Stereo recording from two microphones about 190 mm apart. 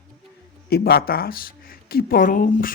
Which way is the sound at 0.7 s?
55° left (ahead or behind).